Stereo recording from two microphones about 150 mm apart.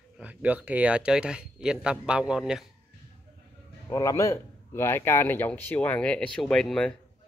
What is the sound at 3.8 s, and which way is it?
A man's voice, 20° left (ahead or behind).